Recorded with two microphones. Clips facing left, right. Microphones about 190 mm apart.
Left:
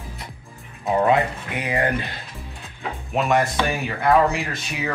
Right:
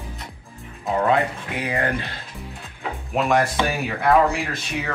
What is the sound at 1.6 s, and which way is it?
Speech, 20° left (ahead or behind).